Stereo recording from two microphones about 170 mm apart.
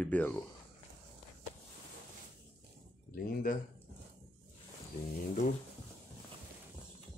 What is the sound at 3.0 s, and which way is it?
Speech, 55° left (ahead or behind).